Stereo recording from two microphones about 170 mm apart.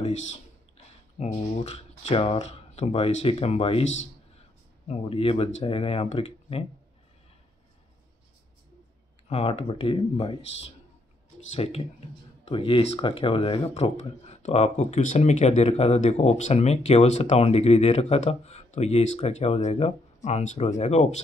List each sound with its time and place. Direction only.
0.0 s speech: 40° left (ahead or behind)
9.3 s speech: 35° left (ahead or behind)